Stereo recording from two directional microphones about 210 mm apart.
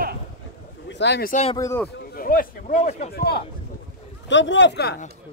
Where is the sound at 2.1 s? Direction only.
40° left (ahead or behind).